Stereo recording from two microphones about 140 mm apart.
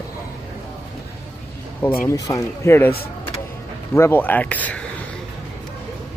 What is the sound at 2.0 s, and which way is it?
Speech, 25° left (ahead or behind).